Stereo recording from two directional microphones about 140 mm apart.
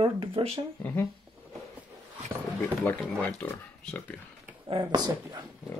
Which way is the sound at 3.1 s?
10° left (ahead or behind).